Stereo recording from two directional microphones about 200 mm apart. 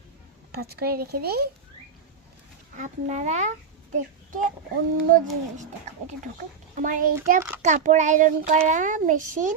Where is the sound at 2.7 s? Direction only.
40° right (ahead or behind).